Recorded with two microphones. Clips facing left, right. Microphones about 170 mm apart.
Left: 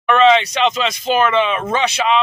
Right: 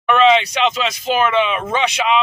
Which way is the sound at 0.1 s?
10° right (ahead or behind).